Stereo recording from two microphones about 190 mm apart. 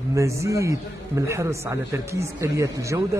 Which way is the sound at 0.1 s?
15° right (ahead or behind).